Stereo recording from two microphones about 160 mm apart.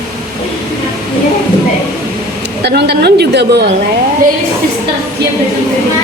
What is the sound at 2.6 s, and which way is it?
A woman's voice, 90° right.